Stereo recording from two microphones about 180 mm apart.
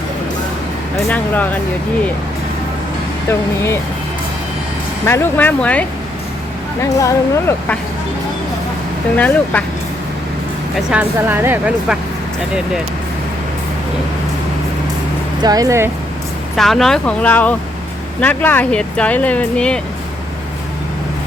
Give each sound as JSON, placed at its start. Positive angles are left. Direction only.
{"t": 1.0, "sound": "speech", "side_deg": 10}
{"t": 3.2, "sound": "speech", "side_deg": 15}
{"t": 5.0, "sound": "speech", "side_deg": 15}
{"t": 6.8, "sound": "speech", "side_deg": 20}
{"t": 9.1, "sound": "speech", "side_deg": 10}
{"t": 10.8, "sound": "speech", "side_deg": -5}
{"t": 15.4, "sound": "speech", "side_deg": -20}
{"t": 16.6, "sound": "speech", "side_deg": 0}